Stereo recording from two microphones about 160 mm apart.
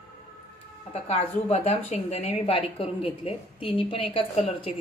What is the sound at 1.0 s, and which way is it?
A woman's voice, 45° left (ahead or behind).